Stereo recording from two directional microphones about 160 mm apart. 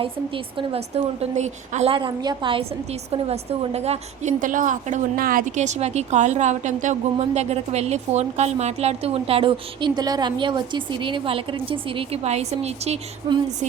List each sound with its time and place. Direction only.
0.0 s a woman's voice: 35° right (ahead or behind)
13.2 s speech: 25° right (ahead or behind)